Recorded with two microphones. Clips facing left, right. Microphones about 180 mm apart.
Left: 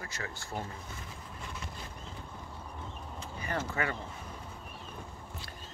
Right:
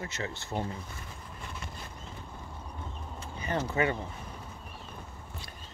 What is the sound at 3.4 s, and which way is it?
Speech, 20° right (ahead or behind).